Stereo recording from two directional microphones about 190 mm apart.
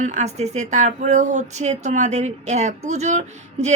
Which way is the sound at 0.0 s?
40° right (ahead or behind).